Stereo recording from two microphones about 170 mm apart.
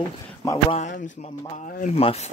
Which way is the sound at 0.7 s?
45° left (ahead or behind).